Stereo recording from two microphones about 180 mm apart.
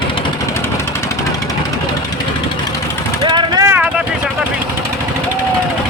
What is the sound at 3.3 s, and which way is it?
Vehicle, 20° right (ahead or behind).